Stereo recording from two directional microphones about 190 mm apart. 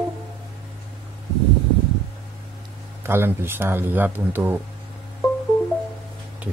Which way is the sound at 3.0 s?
10° right (ahead or behind).